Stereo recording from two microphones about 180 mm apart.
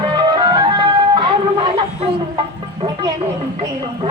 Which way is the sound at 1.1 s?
25° right (ahead or behind).